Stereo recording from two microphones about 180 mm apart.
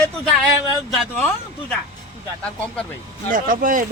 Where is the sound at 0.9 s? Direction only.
Centre (ahead or behind).